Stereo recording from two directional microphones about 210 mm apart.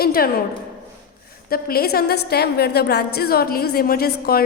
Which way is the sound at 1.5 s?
45° left (ahead or behind).